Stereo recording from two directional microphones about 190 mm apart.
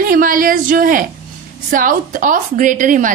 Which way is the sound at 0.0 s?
45° right (ahead or behind).